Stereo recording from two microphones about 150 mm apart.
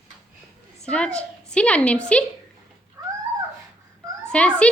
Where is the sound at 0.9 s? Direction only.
5° left (ahead or behind).